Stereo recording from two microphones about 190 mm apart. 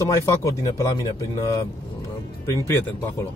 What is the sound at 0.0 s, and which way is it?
Speech, 15° left (ahead or behind).